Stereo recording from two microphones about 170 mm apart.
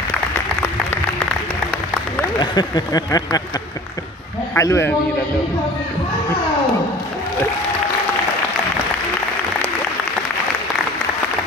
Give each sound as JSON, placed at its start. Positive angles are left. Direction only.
{"t": 2.3, "sound": "speech", "side_deg": 25}
{"t": 4.6, "sound": "a man's voice", "side_deg": 15}